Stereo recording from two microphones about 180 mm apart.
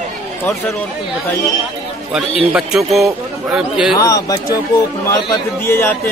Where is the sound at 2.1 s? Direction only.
5° right (ahead or behind).